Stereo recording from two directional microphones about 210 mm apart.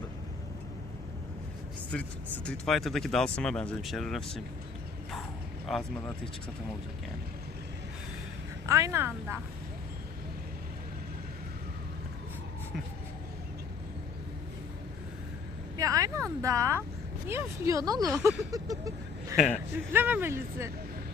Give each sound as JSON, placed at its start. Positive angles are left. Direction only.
{"t": 1.9, "sound": "speech", "side_deg": 5}
{"t": 5.7, "sound": "speech", "side_deg": 0}
{"t": 8.6, "sound": "speech", "side_deg": -15}
{"t": 15.8, "sound": "a sound", "side_deg": -15}
{"t": 17.2, "sound": "speech", "side_deg": -10}